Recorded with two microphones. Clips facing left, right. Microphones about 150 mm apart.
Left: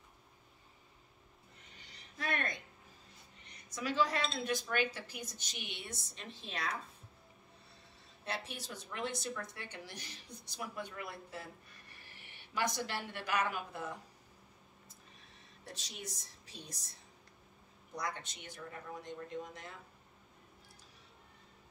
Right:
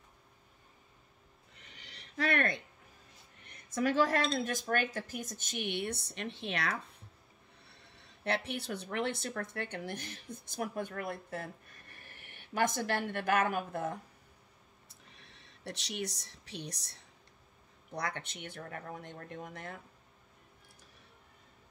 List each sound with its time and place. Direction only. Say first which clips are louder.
1.6 s a sound: right 5 dB; 80° right
3.4 s speech: right 8 dB; 50° right (ahead or behind); by 6.8 s 70° right (ahead or behind)
8.0 s a woman's voice: right 8 dB; 65° right (ahead or behind)
15.2 s speech: right 7 dB; 80° right
17.9 s speech: right 3 dB; 65° right (ahead or behind)